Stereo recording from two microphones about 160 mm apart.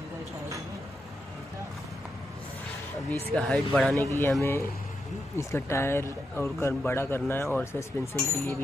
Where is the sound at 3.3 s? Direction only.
5° left (ahead or behind).